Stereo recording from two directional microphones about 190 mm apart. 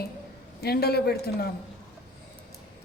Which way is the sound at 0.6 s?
55° left (ahead or behind).